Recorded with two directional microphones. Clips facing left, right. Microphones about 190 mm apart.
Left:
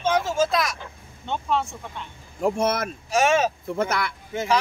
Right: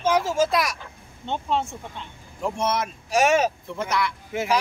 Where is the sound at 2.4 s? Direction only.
50° left (ahead or behind).